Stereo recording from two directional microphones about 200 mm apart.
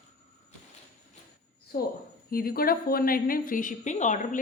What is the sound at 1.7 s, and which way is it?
A woman's voice, 50° left (ahead or behind).